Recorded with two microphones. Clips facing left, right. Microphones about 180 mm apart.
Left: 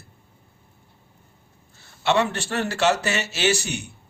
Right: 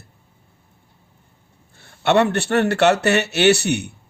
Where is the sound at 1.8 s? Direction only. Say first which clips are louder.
Right 5 dB; 60° right (ahead or behind).